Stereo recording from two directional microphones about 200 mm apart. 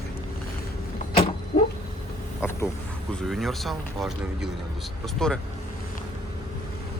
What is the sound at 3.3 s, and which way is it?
Speech, centre (ahead or behind).